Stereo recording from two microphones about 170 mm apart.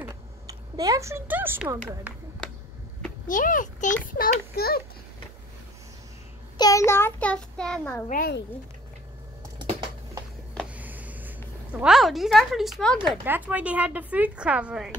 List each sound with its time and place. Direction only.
0.1 s speech: 20° right (ahead or behind)
3.3 s a child's voice: 50° left (ahead or behind)
6.6 s child singing: 20° left (ahead or behind)
8.1 s speech: 60° left (ahead or behind)
9.6 s typing: 25° right (ahead or behind)
10.7 s a sound: 10° right (ahead or behind)
11.8 s speech: centre (ahead or behind)
13.2 s a woman's voice: 10° right (ahead or behind)